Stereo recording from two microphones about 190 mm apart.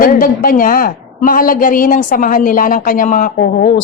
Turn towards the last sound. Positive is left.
turn(degrees=50)  # may be behind; listen again after turning